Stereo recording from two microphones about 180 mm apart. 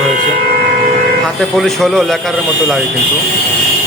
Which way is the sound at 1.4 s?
Centre (ahead or behind).